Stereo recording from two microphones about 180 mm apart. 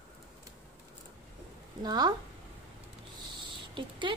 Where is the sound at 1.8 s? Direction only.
25° right (ahead or behind).